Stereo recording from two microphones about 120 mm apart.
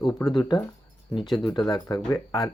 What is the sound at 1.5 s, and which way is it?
Speech, 35° left (ahead or behind).